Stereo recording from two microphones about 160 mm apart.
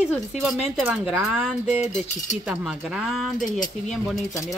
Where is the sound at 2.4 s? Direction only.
5° right (ahead or behind).